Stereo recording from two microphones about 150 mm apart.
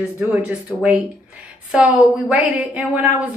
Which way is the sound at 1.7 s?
10° right (ahead or behind).